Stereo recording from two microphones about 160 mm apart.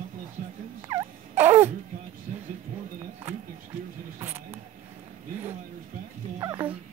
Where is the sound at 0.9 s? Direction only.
15° right (ahead or behind).